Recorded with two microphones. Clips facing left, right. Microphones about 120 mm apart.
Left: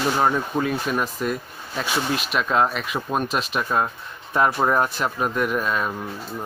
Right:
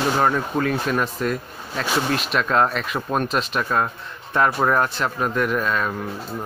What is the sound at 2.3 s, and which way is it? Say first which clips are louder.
Speech: right 1 dB; 5° left (ahead or behind).